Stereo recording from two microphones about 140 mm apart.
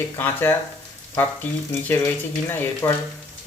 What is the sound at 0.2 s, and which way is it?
Speech, 15° left (ahead or behind).